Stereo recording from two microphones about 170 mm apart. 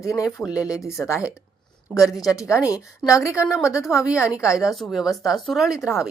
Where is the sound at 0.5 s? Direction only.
20° left (ahead or behind).